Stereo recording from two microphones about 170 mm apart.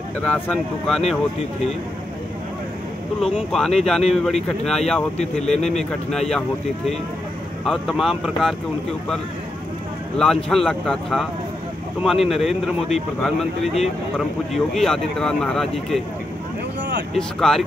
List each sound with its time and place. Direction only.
0.2 s speech: 5° left (ahead or behind)
3.2 s speech: centre (ahead or behind)
7.6 s speech: centre (ahead or behind)
10.1 s speech: 5° left (ahead or behind)
17.1 s speech: centre (ahead or behind)